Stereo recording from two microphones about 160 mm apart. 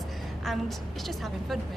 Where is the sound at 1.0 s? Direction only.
Centre (ahead or behind).